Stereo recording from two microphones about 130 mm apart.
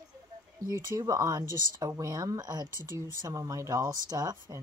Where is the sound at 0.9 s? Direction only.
25° right (ahead or behind).